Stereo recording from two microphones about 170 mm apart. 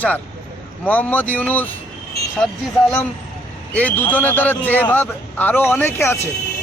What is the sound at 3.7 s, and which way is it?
A man's voice, 10° left (ahead or behind).